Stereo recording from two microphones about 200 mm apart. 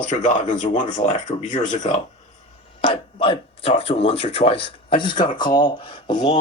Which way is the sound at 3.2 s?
30° left (ahead or behind).